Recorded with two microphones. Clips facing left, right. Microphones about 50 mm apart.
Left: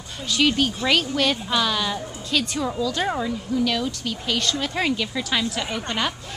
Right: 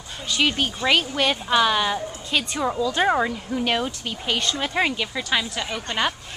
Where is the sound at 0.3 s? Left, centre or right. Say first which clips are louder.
Left 2 dB; centre.